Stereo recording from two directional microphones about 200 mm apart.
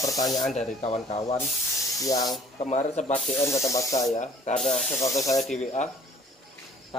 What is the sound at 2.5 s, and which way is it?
Speech, 35° left (ahead or behind).